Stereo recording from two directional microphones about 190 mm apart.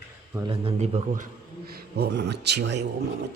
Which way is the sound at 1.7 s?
55° right (ahead or behind).